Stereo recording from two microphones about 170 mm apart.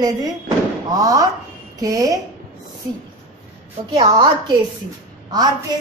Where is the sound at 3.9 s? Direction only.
25° right (ahead or behind).